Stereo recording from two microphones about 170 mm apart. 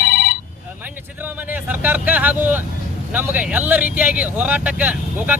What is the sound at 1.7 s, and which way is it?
Speech, 10° right (ahead or behind).